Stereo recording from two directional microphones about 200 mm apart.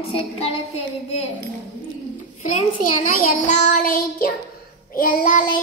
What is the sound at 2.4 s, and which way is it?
Speech, 35° left (ahead or behind).